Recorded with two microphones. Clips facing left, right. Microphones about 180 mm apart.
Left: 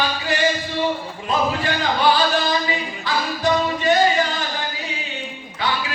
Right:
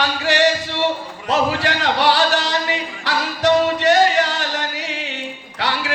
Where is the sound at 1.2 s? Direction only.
80° right.